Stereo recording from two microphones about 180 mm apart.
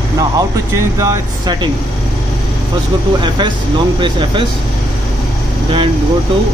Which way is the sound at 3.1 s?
25° right (ahead or behind).